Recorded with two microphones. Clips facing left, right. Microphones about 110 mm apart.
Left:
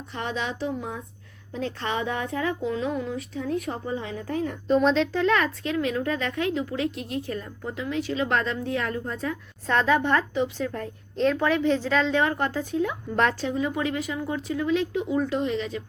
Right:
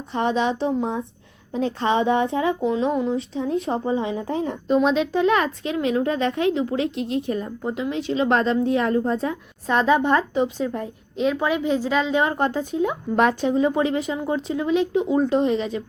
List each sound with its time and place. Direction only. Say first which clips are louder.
0.1 s speech: right 9 dB; 20° right (ahead or behind)
4.7 s speech: right 2 dB; 5° right (ahead or behind)
13.6 s speech: right 6 dB; 25° right (ahead or behind)